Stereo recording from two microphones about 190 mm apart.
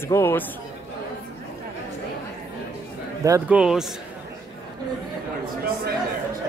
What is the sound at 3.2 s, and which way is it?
Speech, 15° right (ahead or behind).